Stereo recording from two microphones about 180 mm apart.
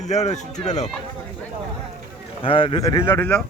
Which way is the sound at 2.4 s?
30° left (ahead or behind).